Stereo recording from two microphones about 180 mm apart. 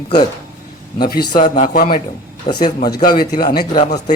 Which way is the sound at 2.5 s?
25° left (ahead or behind).